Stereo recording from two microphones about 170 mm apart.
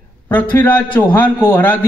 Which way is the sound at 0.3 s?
10° left (ahead or behind).